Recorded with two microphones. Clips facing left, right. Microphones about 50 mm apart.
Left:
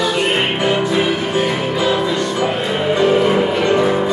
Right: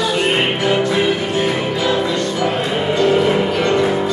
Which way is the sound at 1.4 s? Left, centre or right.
Centre.